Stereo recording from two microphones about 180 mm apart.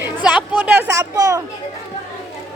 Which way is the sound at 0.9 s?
20° right (ahead or behind).